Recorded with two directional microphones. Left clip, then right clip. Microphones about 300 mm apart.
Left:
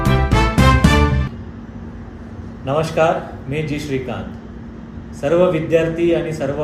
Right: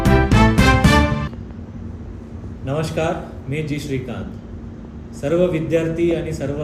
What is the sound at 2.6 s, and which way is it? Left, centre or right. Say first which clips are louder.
A man's voice: left 6 dB; centre.